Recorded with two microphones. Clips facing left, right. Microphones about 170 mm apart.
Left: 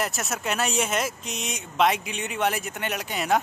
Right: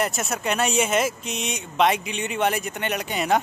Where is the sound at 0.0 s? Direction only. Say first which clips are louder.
Right 3 dB; centre (ahead or behind).